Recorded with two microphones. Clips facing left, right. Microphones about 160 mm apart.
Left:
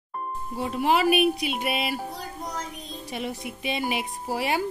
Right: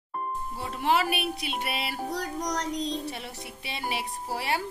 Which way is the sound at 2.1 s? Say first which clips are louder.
Right 4 dB; 80° right.